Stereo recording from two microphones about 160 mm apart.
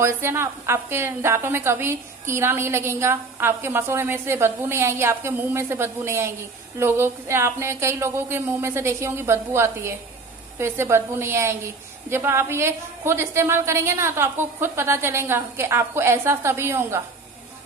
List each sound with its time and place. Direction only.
0.0 s a woman's voice: 15° right (ahead or behind)